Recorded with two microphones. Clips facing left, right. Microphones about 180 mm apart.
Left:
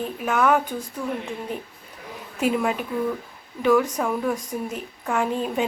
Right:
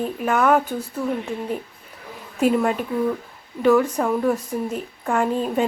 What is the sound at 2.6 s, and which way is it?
Speech, 5° left (ahead or behind).